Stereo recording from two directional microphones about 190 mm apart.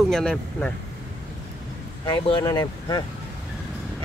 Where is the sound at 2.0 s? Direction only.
25° left (ahead or behind).